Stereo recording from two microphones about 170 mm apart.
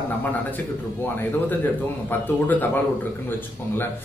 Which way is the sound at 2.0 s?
10° left (ahead or behind).